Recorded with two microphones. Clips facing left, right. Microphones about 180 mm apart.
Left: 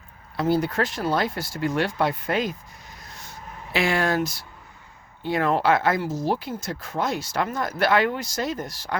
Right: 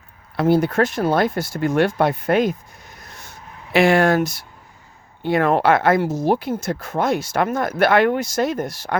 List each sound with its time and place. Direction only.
0.3 s speech: 60° right (ahead or behind)
3.7 s speech: 60° right (ahead or behind)
5.2 s speech: 60° right (ahead or behind)